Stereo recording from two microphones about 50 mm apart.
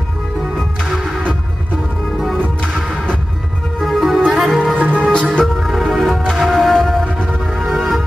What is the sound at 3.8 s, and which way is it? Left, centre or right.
Music, centre.